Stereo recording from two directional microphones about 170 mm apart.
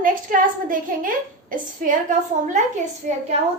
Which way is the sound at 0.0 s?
55° right (ahead or behind).